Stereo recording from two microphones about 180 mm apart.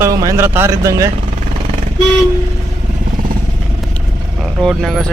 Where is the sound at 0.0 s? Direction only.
20° right (ahead or behind).